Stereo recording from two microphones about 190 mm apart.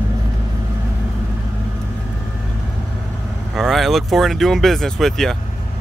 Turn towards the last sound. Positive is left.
turn(degrees=0)  # may be behind; listen again after turning